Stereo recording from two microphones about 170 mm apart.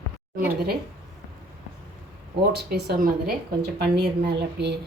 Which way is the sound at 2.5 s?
75° right (ahead or behind).